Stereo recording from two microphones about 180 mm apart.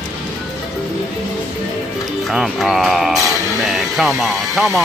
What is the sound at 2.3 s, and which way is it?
Speech, centre (ahead or behind).